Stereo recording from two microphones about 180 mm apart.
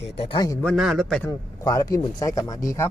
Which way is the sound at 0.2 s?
25° left (ahead or behind).